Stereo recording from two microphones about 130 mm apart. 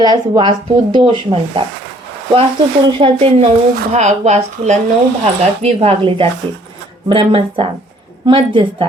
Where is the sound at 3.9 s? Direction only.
60° right (ahead or behind).